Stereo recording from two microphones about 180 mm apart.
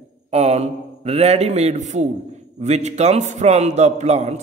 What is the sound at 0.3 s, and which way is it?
A man's voice, 35° right (ahead or behind).